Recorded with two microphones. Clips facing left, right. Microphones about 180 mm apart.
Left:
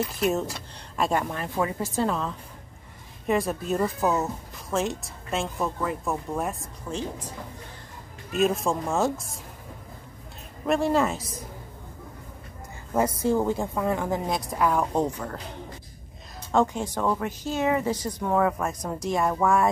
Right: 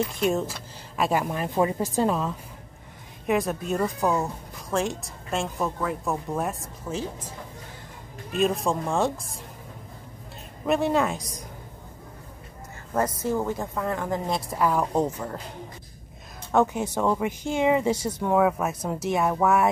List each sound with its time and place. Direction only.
0.1 s speech: centre (ahead or behind)
1.2 s speech: 15° right (ahead or behind)
3.3 s speech: centre (ahead or behind)
8.3 s speech: centre (ahead or behind)
10.7 s speech: centre (ahead or behind)
12.9 s speech: 10° left (ahead or behind); by 15.4 s 5° right (ahead or behind)
16.5 s speech: 5° right (ahead or behind)